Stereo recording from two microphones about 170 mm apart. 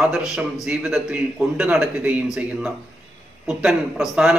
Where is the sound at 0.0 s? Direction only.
5° right (ahead or behind).